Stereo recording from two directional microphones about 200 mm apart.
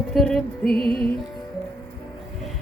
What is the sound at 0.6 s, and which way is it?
Music, 50° left (ahead or behind).